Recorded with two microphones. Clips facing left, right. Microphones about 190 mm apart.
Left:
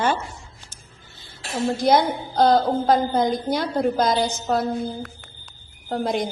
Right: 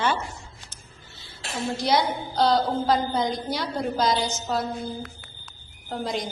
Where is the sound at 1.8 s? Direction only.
50° left (ahead or behind).